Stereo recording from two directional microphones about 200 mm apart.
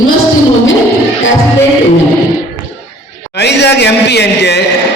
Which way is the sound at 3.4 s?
60° left (ahead or behind).